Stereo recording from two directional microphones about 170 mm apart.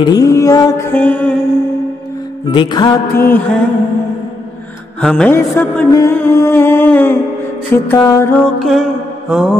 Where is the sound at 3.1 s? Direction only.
10° left (ahead or behind).